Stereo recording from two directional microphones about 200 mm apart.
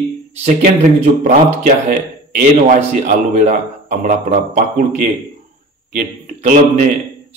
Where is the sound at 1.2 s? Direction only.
45° right (ahead or behind).